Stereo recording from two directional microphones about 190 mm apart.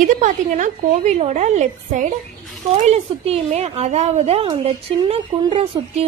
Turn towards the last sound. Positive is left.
turn(degrees=-30)  # may be behind; listen again after turning